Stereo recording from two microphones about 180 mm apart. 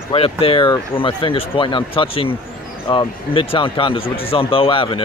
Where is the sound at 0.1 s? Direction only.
30° left (ahead or behind).